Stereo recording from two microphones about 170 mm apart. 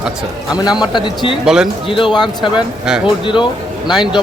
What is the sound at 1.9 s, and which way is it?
Speech, 30° left (ahead or behind).